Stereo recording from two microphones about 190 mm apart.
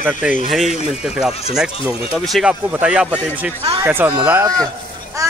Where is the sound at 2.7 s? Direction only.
5° right (ahead or behind).